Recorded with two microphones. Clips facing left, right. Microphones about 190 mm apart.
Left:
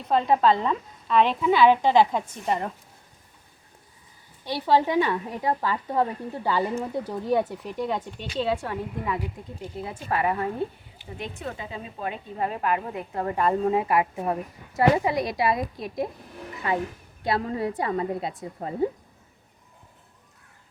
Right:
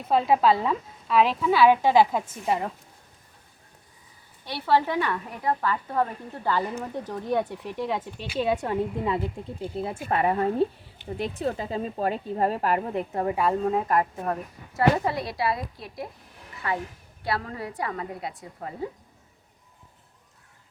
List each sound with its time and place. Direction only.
0.0 s a woman's voice: 5° right (ahead or behind)
4.4 s speech: 15° left (ahead or behind); by 8.5 s 10° right (ahead or behind)
8.6 s a woman's voice: 25° right (ahead or behind)
13.0 s a woman's voice: 25° right (ahead or behind)
13.3 s a woman's voice: centre (ahead or behind); by 18.9 s 25° left (ahead or behind)